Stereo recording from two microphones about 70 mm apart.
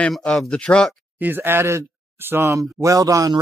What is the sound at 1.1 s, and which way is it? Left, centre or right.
Speech, right.